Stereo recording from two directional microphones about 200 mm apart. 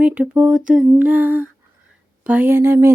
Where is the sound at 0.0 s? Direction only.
5° right (ahead or behind).